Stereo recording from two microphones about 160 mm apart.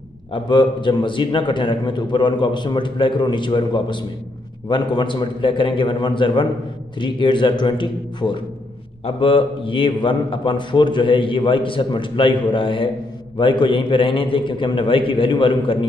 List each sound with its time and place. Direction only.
0.3 s a man's voice: 30° left (ahead or behind)